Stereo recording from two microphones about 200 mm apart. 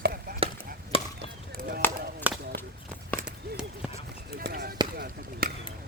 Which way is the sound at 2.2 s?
10° right (ahead or behind).